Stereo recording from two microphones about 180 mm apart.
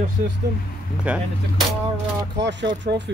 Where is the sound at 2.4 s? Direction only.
75° right (ahead or behind).